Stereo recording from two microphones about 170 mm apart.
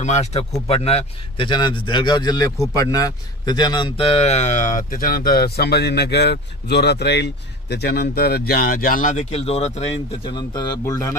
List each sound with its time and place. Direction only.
0.0 s speech: 40° left (ahead or behind); by 11.1 s 20° left (ahead or behind)